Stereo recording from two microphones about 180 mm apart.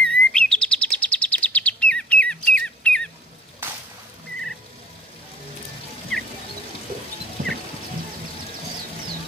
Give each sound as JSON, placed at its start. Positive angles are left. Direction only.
{"t": 0.0, "sound": "chirp", "side_deg": 5}
{"t": 6.1, "sound": "music", "side_deg": 0}
{"t": 7.4, "sound": "music", "side_deg": -50}